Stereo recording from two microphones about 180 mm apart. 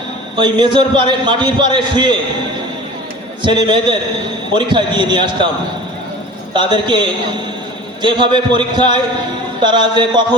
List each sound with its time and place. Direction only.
0.3 s a man's voice: 25° right (ahead or behind)
3.4 s a man's voice: 25° right (ahead or behind)
6.5 s a man's voice: 25° right (ahead or behind)